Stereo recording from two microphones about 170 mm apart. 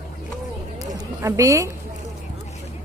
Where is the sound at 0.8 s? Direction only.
20° right (ahead or behind).